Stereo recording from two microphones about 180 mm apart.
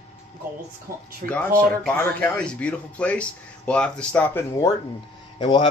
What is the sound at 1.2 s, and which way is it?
Speech, 50° right (ahead or behind).